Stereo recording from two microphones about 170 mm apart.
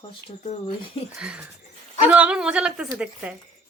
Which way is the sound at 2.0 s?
5° right (ahead or behind).